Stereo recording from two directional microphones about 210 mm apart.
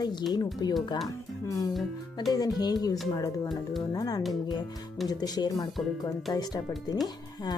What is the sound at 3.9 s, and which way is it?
Music, 15° left (ahead or behind).